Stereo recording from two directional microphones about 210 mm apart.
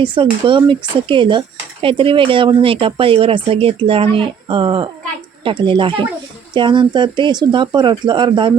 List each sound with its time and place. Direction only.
0.0 s speech: 25° right (ahead or behind)